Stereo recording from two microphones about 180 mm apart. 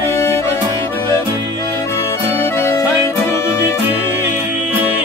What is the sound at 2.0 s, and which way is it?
Music, 15° left (ahead or behind).